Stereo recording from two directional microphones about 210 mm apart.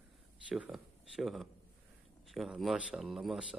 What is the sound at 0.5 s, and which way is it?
Speech, 5° right (ahead or behind).